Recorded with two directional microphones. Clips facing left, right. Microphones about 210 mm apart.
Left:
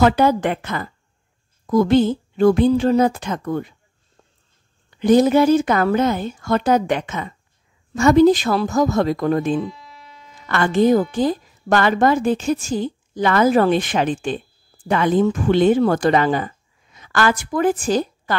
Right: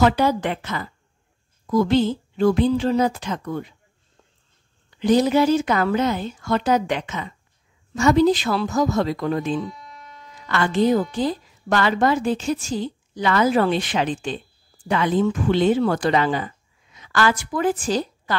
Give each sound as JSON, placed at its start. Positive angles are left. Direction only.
{"t": 0.0, "sound": "a woman's voice", "side_deg": 50}
{"t": 4.9, "sound": "a woman's voice", "side_deg": 50}
{"t": 9.8, "sound": "electric shaver", "side_deg": 5}
{"t": 10.5, "sound": "a woman's voice", "side_deg": 50}